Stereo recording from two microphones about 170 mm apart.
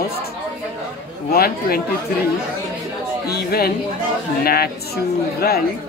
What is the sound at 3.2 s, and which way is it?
A woman's voice, 65° left (ahead or behind).